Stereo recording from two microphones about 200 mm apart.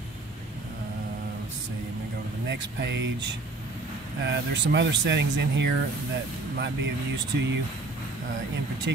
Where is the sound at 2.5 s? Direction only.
60° right (ahead or behind).